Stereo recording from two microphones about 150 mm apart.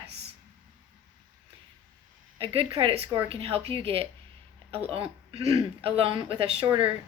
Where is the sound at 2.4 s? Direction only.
40° right (ahead or behind).